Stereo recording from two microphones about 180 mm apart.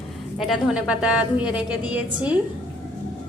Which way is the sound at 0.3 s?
Centre (ahead or behind).